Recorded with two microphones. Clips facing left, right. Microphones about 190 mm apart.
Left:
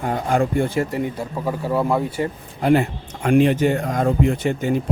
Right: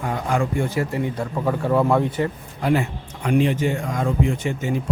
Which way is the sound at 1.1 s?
10° left (ahead or behind).